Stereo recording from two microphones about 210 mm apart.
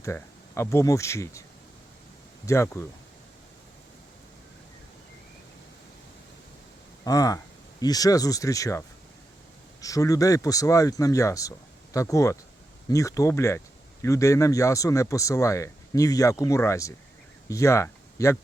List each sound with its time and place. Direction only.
0.0 s speech: 15° left (ahead or behind)
2.5 s speech: 15° left (ahead or behind)
7.0 s speech: 15° left (ahead or behind)
9.8 s speech: 15° left (ahead or behind)